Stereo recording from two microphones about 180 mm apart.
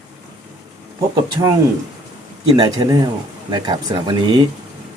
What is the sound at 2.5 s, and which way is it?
Speech, 25° right (ahead or behind).